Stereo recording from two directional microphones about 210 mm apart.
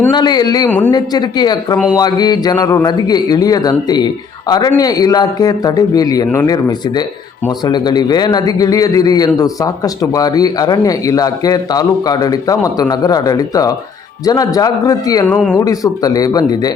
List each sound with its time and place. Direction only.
0.1 s a man's voice: 20° left (ahead or behind)